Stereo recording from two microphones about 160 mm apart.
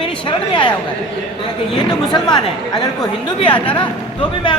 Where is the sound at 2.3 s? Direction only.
25° left (ahead or behind).